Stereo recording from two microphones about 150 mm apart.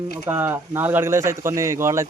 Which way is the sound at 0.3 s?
15° right (ahead or behind).